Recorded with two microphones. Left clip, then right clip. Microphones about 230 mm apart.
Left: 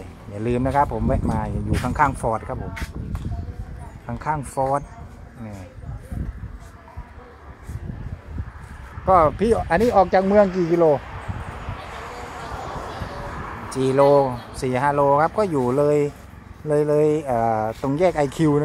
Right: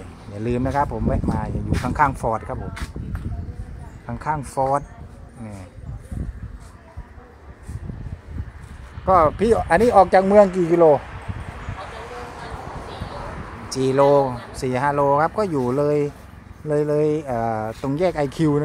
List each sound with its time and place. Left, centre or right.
0.3 s speech: centre
4.0 s speech: centre
4.6 s speech: centre
9.0 s speech: centre; by 11.0 s right
13.7 s speech: centre